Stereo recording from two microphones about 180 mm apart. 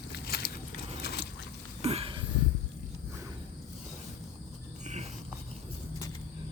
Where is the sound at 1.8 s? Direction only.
35° right (ahead or behind).